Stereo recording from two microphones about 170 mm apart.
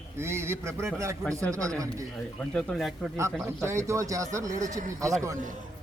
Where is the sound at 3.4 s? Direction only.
15° right (ahead or behind).